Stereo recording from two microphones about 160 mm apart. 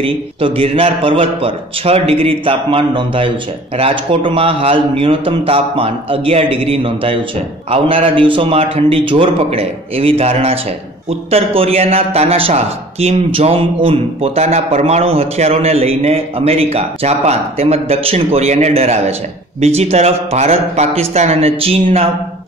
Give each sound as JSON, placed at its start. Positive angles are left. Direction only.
{"t": 0.0, "sound": "a man's voice", "side_deg": -35}